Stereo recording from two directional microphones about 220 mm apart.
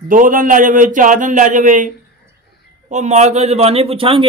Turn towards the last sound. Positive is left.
turn(degrees=-25)  # may be behind; listen again after turning